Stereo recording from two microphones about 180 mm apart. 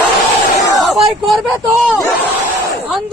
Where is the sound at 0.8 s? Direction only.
Centre (ahead or behind).